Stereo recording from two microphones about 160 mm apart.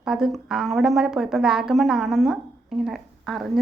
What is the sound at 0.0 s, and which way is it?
A woman's voice, 5° right (ahead or behind).